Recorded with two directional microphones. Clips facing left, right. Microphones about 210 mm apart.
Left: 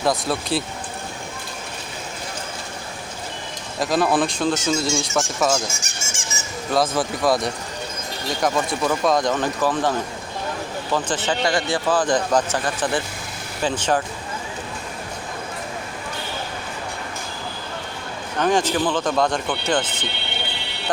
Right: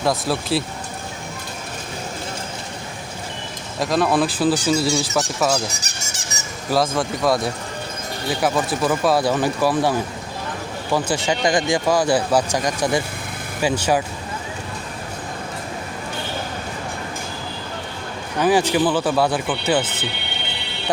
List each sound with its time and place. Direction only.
0.0 s speech: centre (ahead or behind)
3.8 s speech: centre (ahead or behind)
5.7 s squeak: 40° right (ahead or behind)
6.7 s speech: centre (ahead or behind)
10.9 s speech: 10° right (ahead or behind)
18.3 s speech: 10° right (ahead or behind)